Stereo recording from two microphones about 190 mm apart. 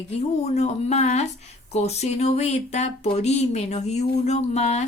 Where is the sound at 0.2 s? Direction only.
35° left (ahead or behind).